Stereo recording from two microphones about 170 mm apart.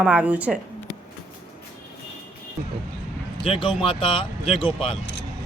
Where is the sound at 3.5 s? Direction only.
30° left (ahead or behind).